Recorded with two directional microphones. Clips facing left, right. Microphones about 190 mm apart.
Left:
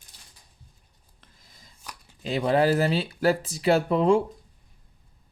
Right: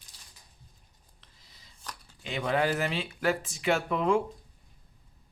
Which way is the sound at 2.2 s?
35° left (ahead or behind).